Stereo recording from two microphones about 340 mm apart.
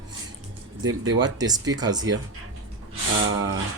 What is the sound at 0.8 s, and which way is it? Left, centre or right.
Speech, centre.